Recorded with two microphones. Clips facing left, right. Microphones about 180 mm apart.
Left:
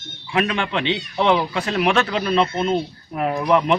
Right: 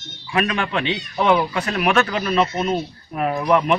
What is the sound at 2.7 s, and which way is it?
Speech, 20° left (ahead or behind).